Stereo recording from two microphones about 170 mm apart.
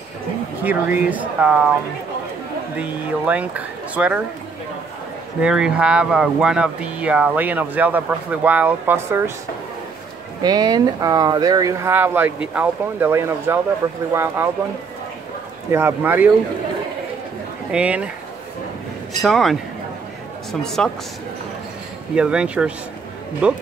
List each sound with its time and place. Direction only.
0.7 s speech: 10° right (ahead or behind)
2.8 s speech: 10° right (ahead or behind)
5.4 s speech: 5° right (ahead or behind)
10.4 s speech: 20° right (ahead or behind)
15.7 s speech: 15° right (ahead or behind)
17.6 s speech: 5° right (ahead or behind)
19.2 s speech: centre (ahead or behind)
20.6 s speech: 5° left (ahead or behind)
22.1 s speech: 5° right (ahead or behind)